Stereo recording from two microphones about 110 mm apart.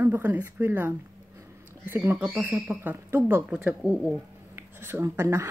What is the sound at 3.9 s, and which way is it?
Speech, 10° right (ahead or behind).